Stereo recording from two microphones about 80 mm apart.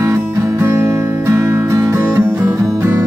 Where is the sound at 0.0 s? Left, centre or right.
Right.